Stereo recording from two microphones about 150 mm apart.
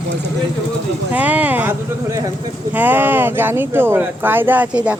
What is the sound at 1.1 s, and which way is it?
Speech, 10° right (ahead or behind).